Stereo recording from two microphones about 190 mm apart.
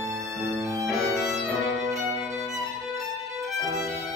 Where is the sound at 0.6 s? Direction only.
15° right (ahead or behind).